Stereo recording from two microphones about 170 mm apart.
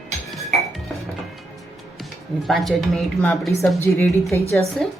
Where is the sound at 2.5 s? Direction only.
Centre (ahead or behind).